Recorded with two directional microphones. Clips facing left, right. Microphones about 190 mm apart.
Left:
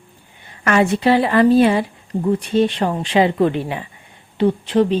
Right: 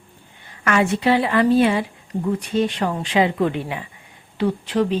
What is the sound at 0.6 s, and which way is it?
A woman's voice, 35° left (ahead or behind).